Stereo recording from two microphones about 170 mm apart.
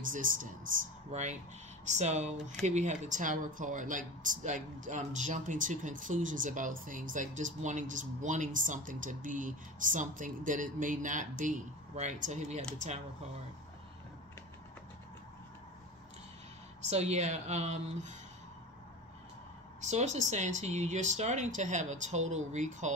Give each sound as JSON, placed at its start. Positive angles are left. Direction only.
{"t": 0.0, "sound": "speech", "side_deg": -50}
{"t": 16.9, "sound": "speech", "side_deg": -40}
{"t": 19.8, "sound": "speech", "side_deg": -45}